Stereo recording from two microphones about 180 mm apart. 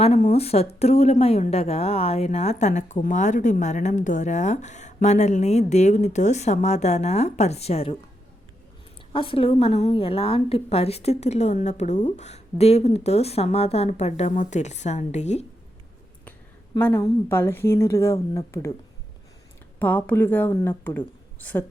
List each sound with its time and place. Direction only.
0.0 s a woman's voice: 35° left (ahead or behind)
9.1 s a woman's voice: 30° left (ahead or behind)
16.7 s speech: 15° left (ahead or behind)
19.8 s speech: 10° left (ahead or behind)